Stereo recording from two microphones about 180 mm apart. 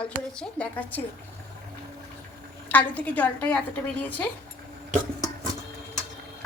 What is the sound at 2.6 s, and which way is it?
Speech, 10° left (ahead or behind).